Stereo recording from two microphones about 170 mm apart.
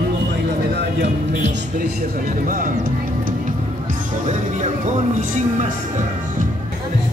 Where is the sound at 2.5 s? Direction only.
55° right (ahead or behind).